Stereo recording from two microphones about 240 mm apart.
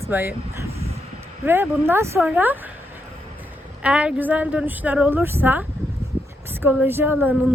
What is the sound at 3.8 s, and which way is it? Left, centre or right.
A woman's voice, centre.